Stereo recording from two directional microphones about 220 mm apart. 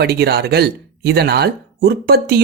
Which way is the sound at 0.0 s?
45° right (ahead or behind).